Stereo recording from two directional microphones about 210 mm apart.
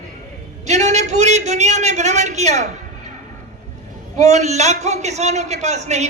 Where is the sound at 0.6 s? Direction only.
35° right (ahead or behind).